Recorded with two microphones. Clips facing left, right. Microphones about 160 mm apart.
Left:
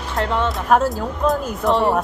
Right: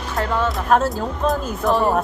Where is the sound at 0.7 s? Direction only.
5° left (ahead or behind).